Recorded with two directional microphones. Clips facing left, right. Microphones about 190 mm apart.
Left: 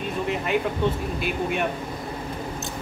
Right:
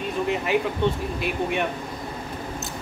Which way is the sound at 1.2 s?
Centre (ahead or behind).